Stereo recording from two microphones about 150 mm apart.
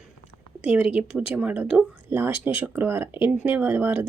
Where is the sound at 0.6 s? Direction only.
10° right (ahead or behind).